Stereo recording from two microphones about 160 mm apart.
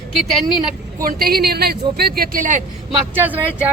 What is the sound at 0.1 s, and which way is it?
Speech, centre (ahead or behind).